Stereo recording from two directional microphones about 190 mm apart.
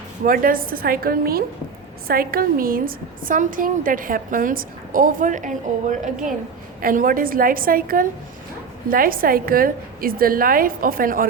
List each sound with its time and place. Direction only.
0.3 s a woman's voice: 50° right (ahead or behind)